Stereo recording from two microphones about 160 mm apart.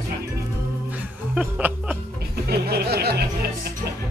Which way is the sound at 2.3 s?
85° right.